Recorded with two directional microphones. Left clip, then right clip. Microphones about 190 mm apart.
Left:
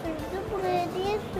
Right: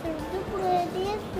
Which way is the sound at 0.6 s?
15° left (ahead or behind).